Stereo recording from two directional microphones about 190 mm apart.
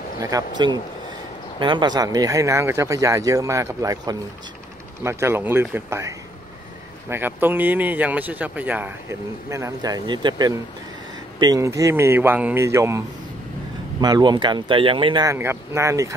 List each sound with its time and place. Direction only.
0.2 s speech: 20° right (ahead or behind)
1.6 s speech: 25° right (ahead or behind)
14.0 s speech: 20° right (ahead or behind)
15.2 s speech: 15° right (ahead or behind)